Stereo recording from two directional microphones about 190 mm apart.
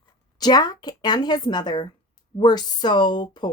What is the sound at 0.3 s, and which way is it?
Speech, 20° left (ahead or behind).